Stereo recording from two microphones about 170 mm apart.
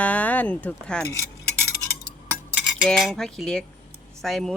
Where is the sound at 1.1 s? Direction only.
15° right (ahead or behind).